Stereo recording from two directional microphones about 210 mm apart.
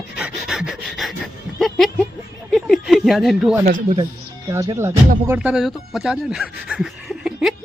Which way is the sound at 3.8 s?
25° right (ahead or behind).